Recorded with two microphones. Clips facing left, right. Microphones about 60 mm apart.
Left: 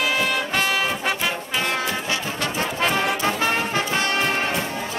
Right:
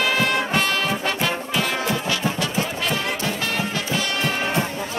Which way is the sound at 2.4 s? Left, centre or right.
Left.